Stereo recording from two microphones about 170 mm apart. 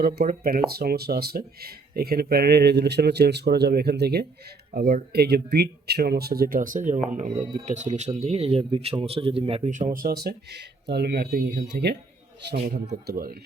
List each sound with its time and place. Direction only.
0.0 s speech: 65° right (ahead or behind)
4.7 s speech: 55° right (ahead or behind); by 9.6 s 35° right (ahead or behind)
9.6 s speech: 50° right (ahead or behind); by 11.9 s 75° right (ahead or behind)
12.9 s speech: 65° right (ahead or behind)